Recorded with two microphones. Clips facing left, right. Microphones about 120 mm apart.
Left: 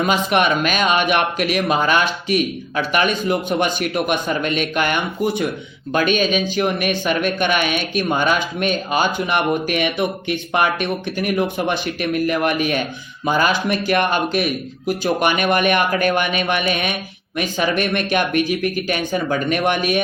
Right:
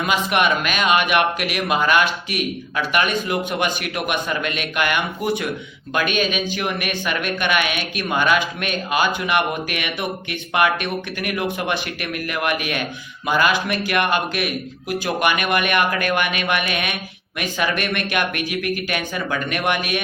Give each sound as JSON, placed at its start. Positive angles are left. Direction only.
{"t": 0.0, "sound": "speech", "side_deg": 35}